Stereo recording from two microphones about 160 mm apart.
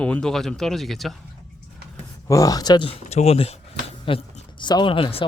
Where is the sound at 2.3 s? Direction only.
20° left (ahead or behind).